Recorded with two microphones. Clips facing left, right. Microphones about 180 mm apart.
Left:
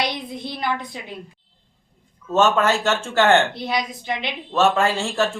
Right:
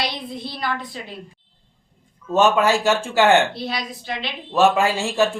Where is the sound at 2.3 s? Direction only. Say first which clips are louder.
Right 1 dB; 15° right (ahead or behind).